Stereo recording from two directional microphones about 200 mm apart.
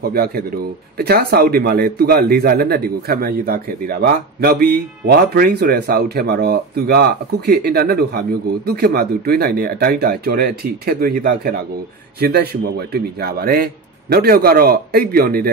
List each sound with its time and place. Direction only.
0.1 s a man's voice: 50° right (ahead or behind)